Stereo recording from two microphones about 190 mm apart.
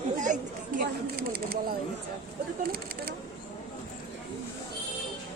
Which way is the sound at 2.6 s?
50° right (ahead or behind).